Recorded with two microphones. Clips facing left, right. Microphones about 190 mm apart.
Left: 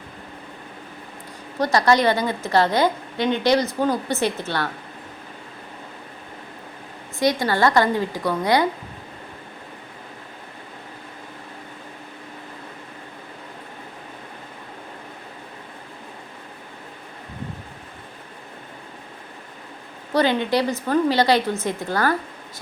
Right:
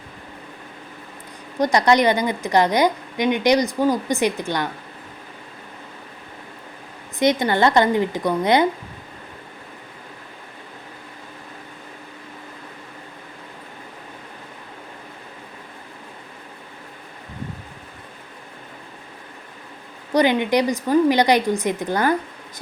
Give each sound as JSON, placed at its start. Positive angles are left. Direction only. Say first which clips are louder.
{"t": 1.5, "sound": "a woman's voice", "louder": "right 2 dB", "side_deg": -20}
{"t": 7.2, "sound": "a woman's voice", "louder": "right 2 dB", "side_deg": -20}
{"t": 20.1, "sound": "a woman's voice", "louder": "right 2 dB", "side_deg": -15}